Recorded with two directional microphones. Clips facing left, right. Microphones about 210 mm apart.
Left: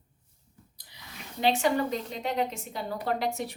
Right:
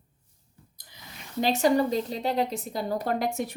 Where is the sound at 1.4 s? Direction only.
40° right (ahead or behind).